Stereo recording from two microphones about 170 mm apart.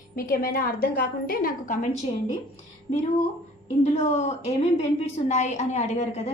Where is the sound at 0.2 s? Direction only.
60° left (ahead or behind).